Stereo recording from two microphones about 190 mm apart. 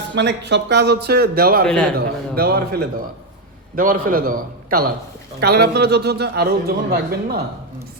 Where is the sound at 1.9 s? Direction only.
55° right (ahead or behind).